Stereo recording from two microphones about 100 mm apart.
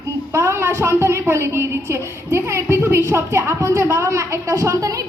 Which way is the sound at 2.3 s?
25° right (ahead or behind).